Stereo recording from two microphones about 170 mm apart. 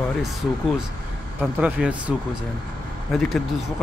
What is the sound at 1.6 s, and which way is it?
Speech, 5° right (ahead or behind).